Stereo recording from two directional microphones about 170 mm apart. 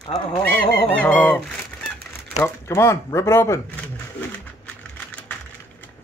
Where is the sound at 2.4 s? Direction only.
15° left (ahead or behind).